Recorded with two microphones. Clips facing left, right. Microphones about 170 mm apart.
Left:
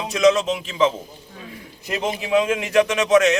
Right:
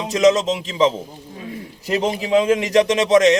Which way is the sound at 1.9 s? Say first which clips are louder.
Right 3 dB; 35° right (ahead or behind).